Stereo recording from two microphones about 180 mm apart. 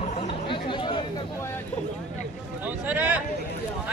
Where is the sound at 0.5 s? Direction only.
25° left (ahead or behind).